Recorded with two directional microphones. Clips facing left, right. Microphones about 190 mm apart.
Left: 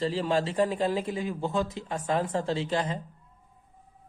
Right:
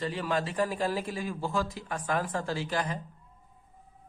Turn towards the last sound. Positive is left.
turn(degrees=25)  # may be behind; listen again after turning